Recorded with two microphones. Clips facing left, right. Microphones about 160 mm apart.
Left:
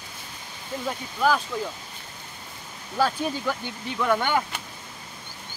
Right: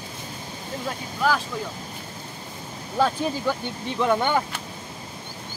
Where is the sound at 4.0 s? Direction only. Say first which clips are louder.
Right 2 dB; 25° right (ahead or behind).